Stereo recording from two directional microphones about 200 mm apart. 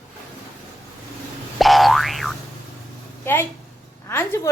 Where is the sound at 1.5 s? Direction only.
Centre (ahead or behind).